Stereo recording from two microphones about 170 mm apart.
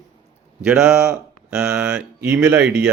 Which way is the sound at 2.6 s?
75° right (ahead or behind).